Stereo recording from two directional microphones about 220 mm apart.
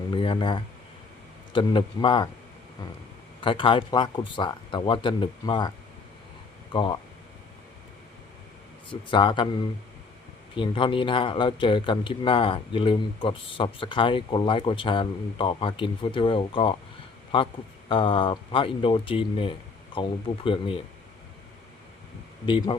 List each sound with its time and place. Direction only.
0.1 s a sound: 25° left (ahead or behind)
1.5 s speech: 20° left (ahead or behind)
3.4 s speech: 25° left (ahead or behind)
6.7 s speech: 20° left (ahead or behind)
8.9 s speech: 20° left (ahead or behind)
10.5 s speech: 25° left (ahead or behind)
22.4 s speech: 20° left (ahead or behind)